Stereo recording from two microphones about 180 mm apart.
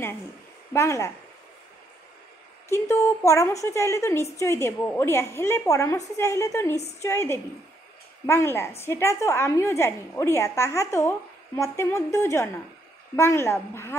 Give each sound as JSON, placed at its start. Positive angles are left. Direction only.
{"t": 0.7, "sound": "a woman's voice", "side_deg": 15}
{"t": 2.7, "sound": "a woman's voice", "side_deg": 15}